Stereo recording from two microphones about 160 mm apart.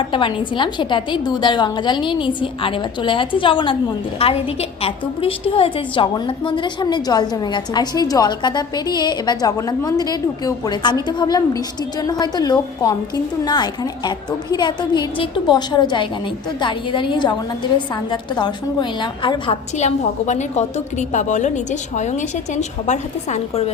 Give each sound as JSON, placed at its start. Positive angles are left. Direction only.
{"t": 0.0, "sound": "a woman's voice", "side_deg": 30}
{"t": 19.7, "sound": "a woman's voice", "side_deg": 45}